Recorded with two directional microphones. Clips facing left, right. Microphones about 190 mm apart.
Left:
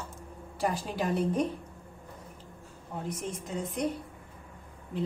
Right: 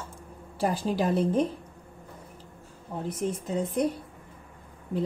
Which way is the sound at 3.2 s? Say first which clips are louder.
Right 6 dB; 35° right (ahead or behind).